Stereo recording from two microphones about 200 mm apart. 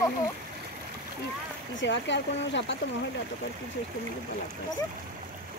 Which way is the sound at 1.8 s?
65° left (ahead or behind).